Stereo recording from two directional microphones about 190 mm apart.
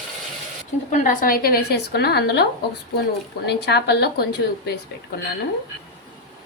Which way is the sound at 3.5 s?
60° left (ahead or behind).